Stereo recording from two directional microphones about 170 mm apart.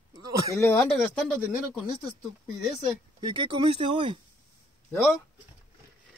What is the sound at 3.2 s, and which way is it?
Speech, 30° right (ahead or behind).